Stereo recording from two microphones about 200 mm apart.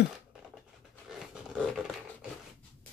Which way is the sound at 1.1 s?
5° right (ahead or behind).